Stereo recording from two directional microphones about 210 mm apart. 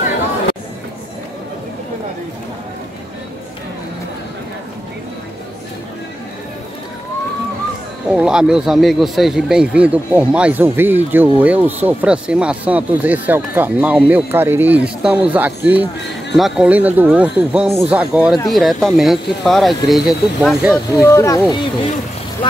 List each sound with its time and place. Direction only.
8.1 s speech: 5° right (ahead or behind)
20.9 s speech: 15° left (ahead or behind)